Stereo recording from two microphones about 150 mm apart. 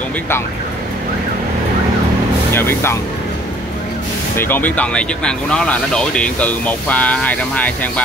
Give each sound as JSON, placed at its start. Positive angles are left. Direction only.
{"t": 2.5, "sound": "speech", "side_deg": 15}
{"t": 4.4, "sound": "speech", "side_deg": 15}